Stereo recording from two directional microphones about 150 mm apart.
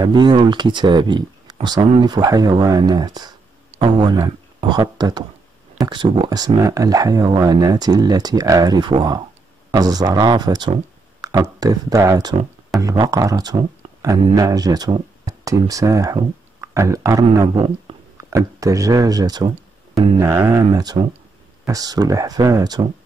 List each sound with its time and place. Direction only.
0.0 s speech: 30° right (ahead or behind)